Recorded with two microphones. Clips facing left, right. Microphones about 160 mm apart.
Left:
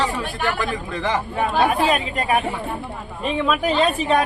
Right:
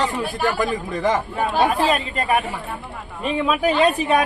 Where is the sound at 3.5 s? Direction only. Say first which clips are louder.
Right 1 dB; 10° right (ahead or behind).